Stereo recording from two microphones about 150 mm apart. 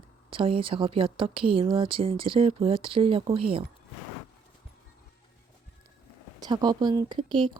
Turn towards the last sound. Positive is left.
turn(degrees=-35)  # may be behind; listen again after turning